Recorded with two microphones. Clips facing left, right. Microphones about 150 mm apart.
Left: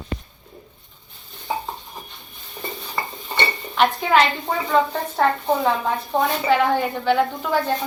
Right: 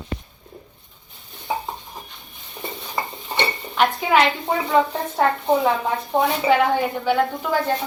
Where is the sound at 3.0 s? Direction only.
20° right (ahead or behind).